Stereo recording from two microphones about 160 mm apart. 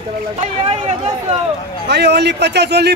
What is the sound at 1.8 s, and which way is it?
A man's voice, 90° right.